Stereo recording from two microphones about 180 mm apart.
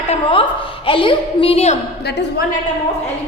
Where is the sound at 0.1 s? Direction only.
30° left (ahead or behind).